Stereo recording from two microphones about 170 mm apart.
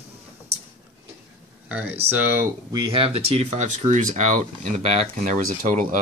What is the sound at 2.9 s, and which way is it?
Speech, 35° right (ahead or behind).